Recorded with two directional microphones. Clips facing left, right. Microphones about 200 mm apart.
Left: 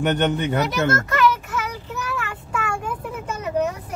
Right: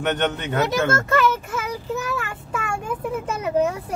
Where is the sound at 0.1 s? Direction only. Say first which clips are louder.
Left 3 dB; 10° left (ahead or behind).